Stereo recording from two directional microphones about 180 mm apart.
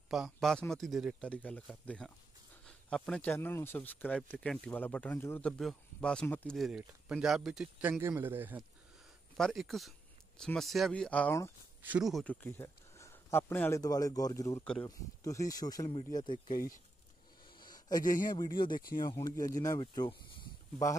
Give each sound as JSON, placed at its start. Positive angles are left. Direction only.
{"t": 0.1, "sound": "speech", "side_deg": 0}
{"t": 9.4, "sound": "speech", "side_deg": 0}
{"t": 11.8, "sound": "speech", "side_deg": -5}
{"t": 16.5, "sound": "speech", "side_deg": 50}
{"t": 17.6, "sound": "a sound", "side_deg": 20}
{"t": 18.3, "sound": "speech", "side_deg": 25}